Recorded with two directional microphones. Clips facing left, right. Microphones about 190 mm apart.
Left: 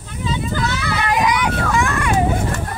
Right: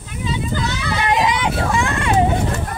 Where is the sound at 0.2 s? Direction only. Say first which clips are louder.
Left 1 dB; 20° right (ahead or behind).